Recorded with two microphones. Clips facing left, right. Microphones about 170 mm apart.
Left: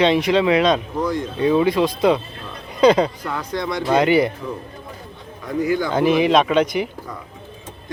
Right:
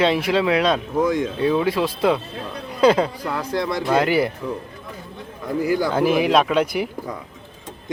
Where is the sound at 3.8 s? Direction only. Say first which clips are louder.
Left 4 dB; centre (ahead or behind).